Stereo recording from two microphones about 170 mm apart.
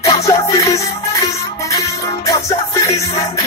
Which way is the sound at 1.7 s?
20° left (ahead or behind).